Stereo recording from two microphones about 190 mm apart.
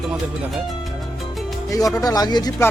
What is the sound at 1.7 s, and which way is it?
Speech, 20° left (ahead or behind).